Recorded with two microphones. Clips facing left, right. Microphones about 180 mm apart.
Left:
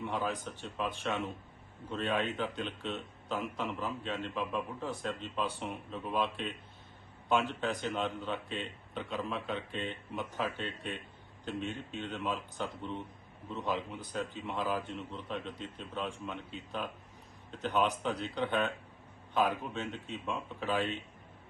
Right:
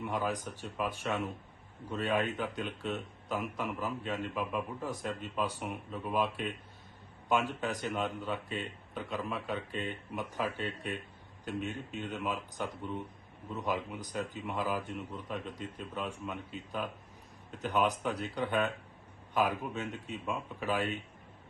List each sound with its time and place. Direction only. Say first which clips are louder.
0.0 s a man's voice: right 1 dB; 10° right (ahead or behind)